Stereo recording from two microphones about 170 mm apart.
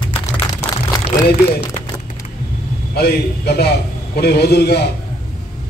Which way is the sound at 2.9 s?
70° left (ahead or behind).